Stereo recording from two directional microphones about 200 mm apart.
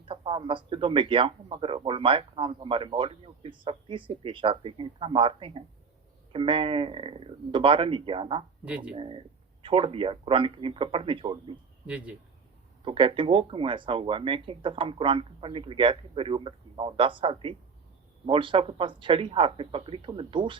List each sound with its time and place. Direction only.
0.1 s a man's voice: 25° right (ahead or behind)
8.6 s speech: 5° right (ahead or behind)
9.0 s a man's voice: 25° right (ahead or behind)
11.9 s speech: 5° right (ahead or behind)
12.8 s a man's voice: 25° right (ahead or behind)